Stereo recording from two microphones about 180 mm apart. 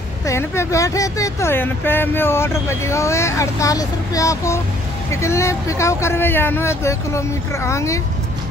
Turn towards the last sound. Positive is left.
turn(degrees=15)  # may be behind; listen again after turning